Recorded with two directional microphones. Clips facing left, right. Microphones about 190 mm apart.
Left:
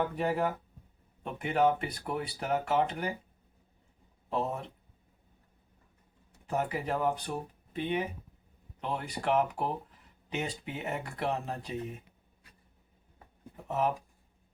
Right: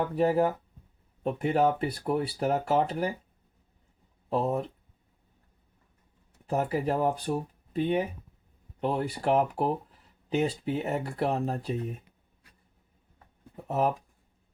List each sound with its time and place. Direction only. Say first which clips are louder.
0.2 s speech: right 6 dB; 35° right (ahead or behind)
4.3 s speech: right 5 dB; 35° right (ahead or behind)
6.5 s speech: right 4 dB; 35° right (ahead or behind)
13.7 s speech: right 3 dB; 35° right (ahead or behind)